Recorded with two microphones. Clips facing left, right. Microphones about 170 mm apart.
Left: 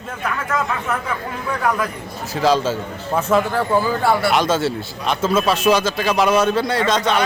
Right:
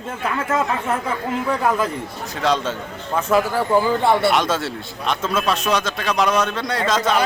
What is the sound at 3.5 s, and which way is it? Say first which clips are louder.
Speech: right 1 dB; 15° right (ahead or behind).